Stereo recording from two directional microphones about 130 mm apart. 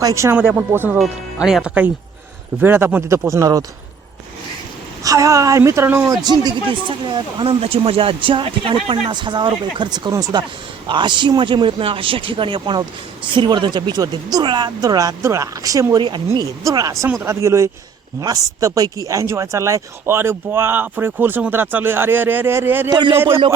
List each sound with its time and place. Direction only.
0.0 s speech: 25° right (ahead or behind)
0.9 s speech: 5° right (ahead or behind); by 3.6 s 25° right (ahead or behind)
5.0 s speech: 25° right (ahead or behind)
6.4 s speech: 35° right (ahead or behind); by 22.9 s 15° right (ahead or behind)
22.9 s speech: 35° right (ahead or behind)
23.1 s speech: 20° right (ahead or behind)